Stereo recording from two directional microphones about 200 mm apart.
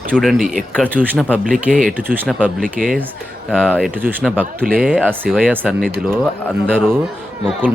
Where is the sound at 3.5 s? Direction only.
5° right (ahead or behind).